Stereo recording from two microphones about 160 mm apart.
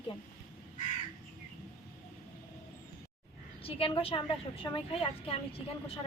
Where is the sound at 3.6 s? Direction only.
35° left (ahead or behind).